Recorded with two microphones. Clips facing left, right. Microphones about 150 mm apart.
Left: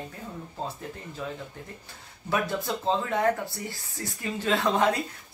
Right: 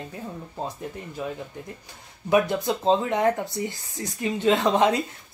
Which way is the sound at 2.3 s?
20° right (ahead or behind).